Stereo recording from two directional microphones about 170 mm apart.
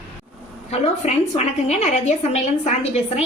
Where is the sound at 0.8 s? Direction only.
40° left (ahead or behind).